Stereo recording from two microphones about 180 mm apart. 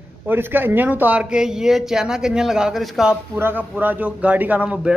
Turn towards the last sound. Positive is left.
turn(degrees=-5)  # may be behind; listen again after turning